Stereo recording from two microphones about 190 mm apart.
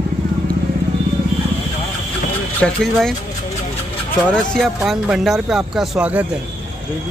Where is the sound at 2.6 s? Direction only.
5° left (ahead or behind).